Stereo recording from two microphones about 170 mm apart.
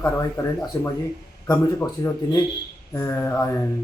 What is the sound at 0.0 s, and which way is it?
Speech, 20° left (ahead or behind).